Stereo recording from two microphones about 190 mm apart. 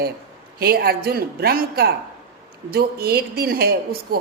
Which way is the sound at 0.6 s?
55° right (ahead or behind).